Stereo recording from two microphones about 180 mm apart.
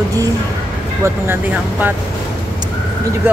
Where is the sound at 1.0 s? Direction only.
15° right (ahead or behind).